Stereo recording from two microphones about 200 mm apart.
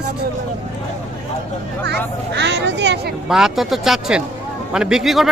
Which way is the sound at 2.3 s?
60° right (ahead or behind).